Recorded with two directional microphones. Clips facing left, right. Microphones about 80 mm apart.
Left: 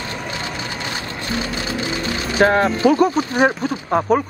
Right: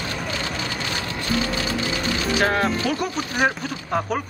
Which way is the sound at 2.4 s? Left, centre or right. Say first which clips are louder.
Left 9 dB; left.